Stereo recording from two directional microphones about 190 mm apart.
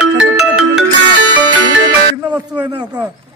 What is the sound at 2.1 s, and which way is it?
Speech, 10° right (ahead or behind).